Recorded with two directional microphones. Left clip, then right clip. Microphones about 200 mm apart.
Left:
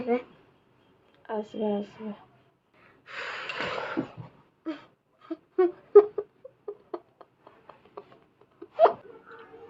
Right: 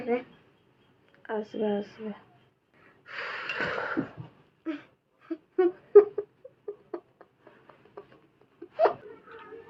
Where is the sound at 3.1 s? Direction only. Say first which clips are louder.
Right 1 dB; 5° left (ahead or behind).